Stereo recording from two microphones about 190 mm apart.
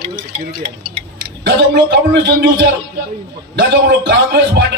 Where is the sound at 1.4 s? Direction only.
65° right (ahead or behind).